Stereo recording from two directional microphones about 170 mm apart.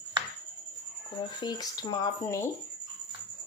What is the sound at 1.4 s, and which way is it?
A woman's voice, 25° left (ahead or behind).